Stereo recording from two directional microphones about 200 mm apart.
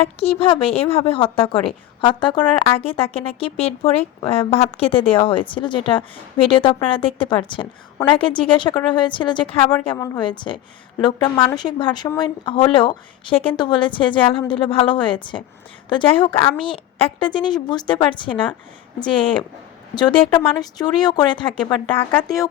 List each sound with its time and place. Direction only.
0.2 s a woman's voice: 30° left (ahead or behind)